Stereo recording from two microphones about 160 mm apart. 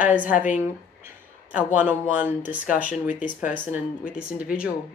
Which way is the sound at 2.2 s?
10° right (ahead or behind).